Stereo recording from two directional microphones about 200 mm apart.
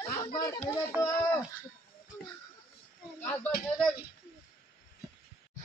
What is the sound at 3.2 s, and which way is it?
Speech, 10° left (ahead or behind).